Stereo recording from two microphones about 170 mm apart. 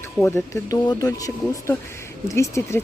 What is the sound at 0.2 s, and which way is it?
Speech, 10° left (ahead or behind).